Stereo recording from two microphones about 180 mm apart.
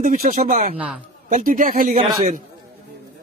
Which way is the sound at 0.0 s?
50° right (ahead or behind).